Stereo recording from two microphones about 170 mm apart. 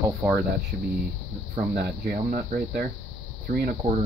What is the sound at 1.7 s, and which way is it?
Speech, 60° right (ahead or behind).